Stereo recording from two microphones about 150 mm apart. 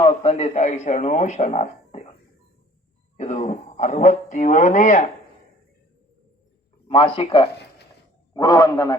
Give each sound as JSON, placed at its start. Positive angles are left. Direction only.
{"t": 0.0, "sound": "a man's voice", "side_deg": 40}
{"t": 3.2, "sound": "a man's voice", "side_deg": 50}
{"t": 6.8, "sound": "speech", "side_deg": 35}
{"t": 8.3, "sound": "a man's voice", "side_deg": 25}